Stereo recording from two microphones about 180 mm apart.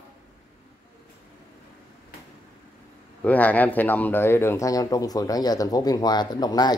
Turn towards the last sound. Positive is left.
turn(degrees=20)  # may be behind; listen again after turning